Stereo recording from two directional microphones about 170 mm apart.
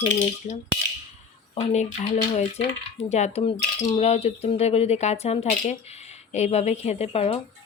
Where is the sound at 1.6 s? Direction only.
40° left (ahead or behind).